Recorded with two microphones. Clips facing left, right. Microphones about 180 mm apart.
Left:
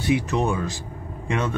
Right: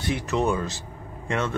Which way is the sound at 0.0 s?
15° left (ahead or behind).